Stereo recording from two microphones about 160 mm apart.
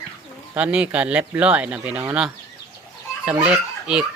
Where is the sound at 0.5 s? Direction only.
10° right (ahead or behind).